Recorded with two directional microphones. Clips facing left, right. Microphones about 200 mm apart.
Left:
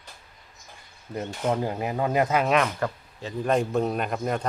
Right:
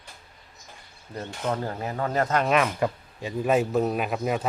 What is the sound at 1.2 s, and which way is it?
A man's voice, 15° left (ahead or behind).